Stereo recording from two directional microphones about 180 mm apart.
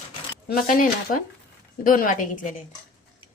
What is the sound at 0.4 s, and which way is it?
A woman's voice, 50° left (ahead or behind).